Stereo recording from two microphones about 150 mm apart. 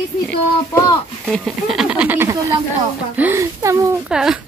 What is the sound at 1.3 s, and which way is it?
Speech, 5° right (ahead or behind).